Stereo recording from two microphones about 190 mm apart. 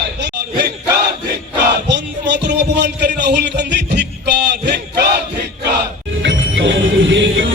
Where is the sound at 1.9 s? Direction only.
65° right (ahead or behind).